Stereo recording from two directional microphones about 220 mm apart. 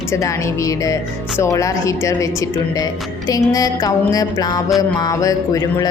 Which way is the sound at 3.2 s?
15° left (ahead or behind).